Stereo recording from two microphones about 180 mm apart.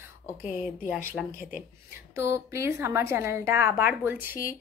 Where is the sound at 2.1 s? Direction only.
15° right (ahead or behind).